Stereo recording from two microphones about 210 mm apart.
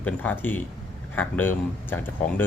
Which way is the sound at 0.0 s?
5° left (ahead or behind).